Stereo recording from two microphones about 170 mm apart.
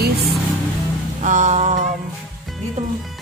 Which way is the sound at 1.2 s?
45° right (ahead or behind).